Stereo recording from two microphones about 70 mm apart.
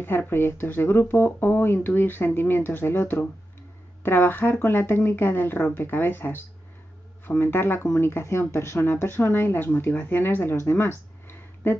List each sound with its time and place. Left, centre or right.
0.0 s speech: left